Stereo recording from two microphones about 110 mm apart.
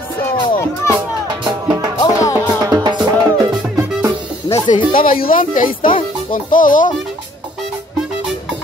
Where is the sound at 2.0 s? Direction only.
30° left (ahead or behind).